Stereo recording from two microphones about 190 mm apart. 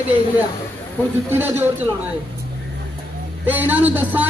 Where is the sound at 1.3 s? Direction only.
10° right (ahead or behind).